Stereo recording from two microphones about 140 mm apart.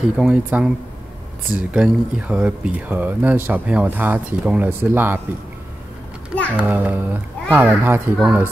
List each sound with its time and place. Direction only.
0.0 s speech: 5° right (ahead or behind)
6.5 s speech: 10° right (ahead or behind)